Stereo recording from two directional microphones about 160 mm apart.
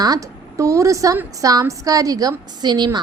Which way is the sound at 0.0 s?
20° right (ahead or behind).